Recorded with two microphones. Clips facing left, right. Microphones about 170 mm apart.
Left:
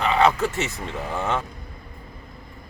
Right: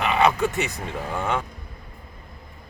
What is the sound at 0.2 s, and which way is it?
Vehicle, centre (ahead or behind).